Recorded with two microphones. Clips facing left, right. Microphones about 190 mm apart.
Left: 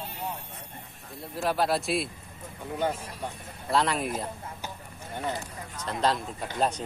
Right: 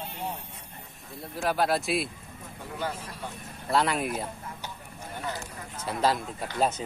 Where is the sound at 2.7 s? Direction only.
25° left (ahead or behind).